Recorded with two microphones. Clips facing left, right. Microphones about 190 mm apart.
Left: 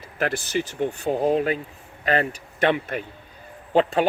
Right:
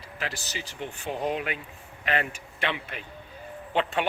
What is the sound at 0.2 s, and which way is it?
Speech, 50° left (ahead or behind).